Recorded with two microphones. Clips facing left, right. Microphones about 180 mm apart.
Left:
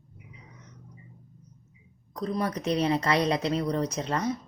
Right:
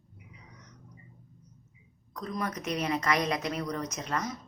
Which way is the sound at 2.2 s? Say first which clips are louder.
Left 5 dB; 35° left (ahead or behind).